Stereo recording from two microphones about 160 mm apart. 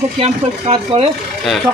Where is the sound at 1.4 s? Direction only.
Centre (ahead or behind).